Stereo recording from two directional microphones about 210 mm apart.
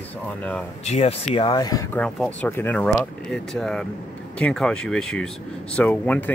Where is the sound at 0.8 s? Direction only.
30° left (ahead or behind).